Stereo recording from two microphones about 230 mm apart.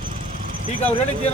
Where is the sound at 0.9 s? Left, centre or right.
Left.